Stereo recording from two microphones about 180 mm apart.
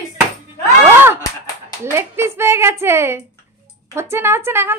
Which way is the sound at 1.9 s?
15° right (ahead or behind).